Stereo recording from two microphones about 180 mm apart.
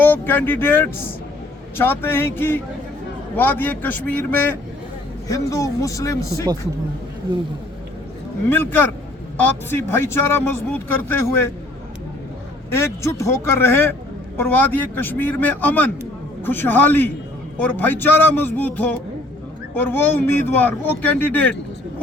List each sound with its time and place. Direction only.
0.0 s speech: 10° left (ahead or behind)
8.4 s speech: 10° left (ahead or behind)
12.7 s speech: 15° left (ahead or behind)